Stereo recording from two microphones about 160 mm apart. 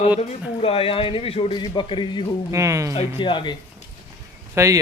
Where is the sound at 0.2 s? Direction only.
40° left (ahead or behind).